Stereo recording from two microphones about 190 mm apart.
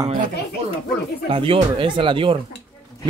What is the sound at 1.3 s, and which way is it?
Speech, 25° right (ahead or behind).